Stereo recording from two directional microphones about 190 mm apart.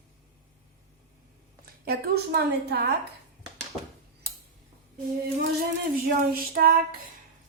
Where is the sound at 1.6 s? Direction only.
55° right (ahead or behind).